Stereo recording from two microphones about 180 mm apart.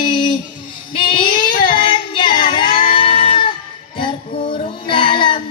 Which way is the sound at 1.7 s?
25° left (ahead or behind).